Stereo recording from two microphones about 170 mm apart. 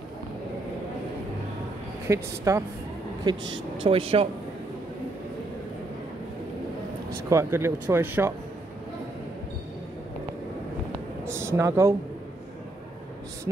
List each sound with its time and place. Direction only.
2.0 s a woman's voice: 20° right (ahead or behind); by 4.3 s 35° right (ahead or behind)
7.2 s speech: 15° right (ahead or behind)
11.2 s a sound: 15° right (ahead or behind)